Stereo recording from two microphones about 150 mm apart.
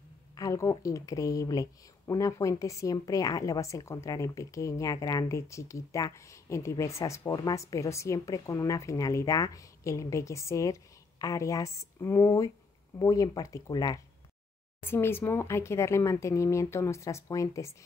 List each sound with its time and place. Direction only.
0.4 s speech: 20° left (ahead or behind)